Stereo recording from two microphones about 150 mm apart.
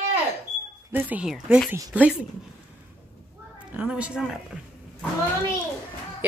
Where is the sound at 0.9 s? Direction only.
10° right (ahead or behind).